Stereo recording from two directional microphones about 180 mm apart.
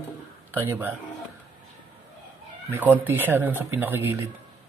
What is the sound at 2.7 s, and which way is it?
Speech, 10° right (ahead or behind).